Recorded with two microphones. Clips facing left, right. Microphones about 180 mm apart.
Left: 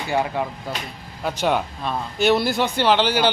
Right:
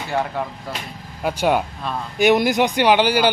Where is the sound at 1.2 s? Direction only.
10° right (ahead or behind).